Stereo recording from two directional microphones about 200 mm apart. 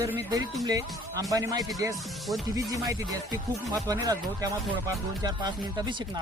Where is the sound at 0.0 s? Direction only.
15° right (ahead or behind).